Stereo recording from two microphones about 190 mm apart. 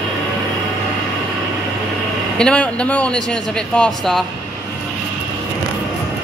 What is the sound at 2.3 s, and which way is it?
A man's voice, 5° left (ahead or behind).